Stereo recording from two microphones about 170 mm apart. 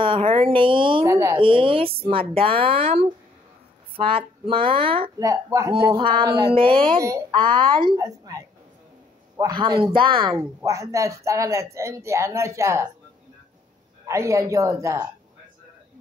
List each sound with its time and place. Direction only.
0.0 s speech: 30° right (ahead or behind)
1.0 s speech: 15° right (ahead or behind)
1.4 s speech: 30° right (ahead or behind)
5.2 s a woman's voice: 20° right (ahead or behind)
5.9 s a woman's voice: 30° right (ahead or behind)
7.0 s a woman's voice: 20° right (ahead or behind)
10.3 s speech: 20° right (ahead or behind)
14.0 s speech: 15° right (ahead or behind)